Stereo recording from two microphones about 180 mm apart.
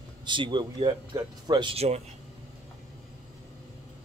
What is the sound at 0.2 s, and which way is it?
Speech, 25° right (ahead or behind).